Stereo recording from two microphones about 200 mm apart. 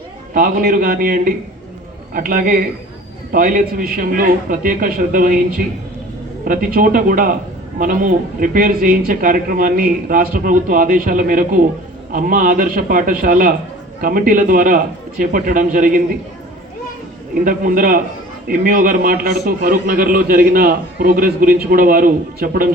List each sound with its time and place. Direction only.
0.3 s a man's voice: 45° right (ahead or behind)
17.4 s a man's voice: 45° right (ahead or behind)